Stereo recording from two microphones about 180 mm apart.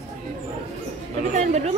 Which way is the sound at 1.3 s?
40° right (ahead or behind).